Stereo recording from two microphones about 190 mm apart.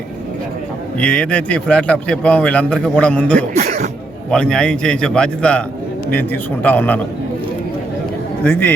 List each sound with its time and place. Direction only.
0.9 s a man's voice: 5° left (ahead or behind)
3.5 s cough: 35° right (ahead or behind)
4.3 s a man's voice: 5° left (ahead or behind)
8.4 s a man's voice: 10° left (ahead or behind)